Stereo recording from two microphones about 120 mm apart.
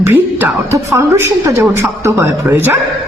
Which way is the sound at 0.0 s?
20° right (ahead or behind).